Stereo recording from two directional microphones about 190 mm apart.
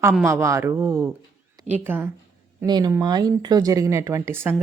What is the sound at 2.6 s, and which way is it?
Speech, 20° right (ahead or behind).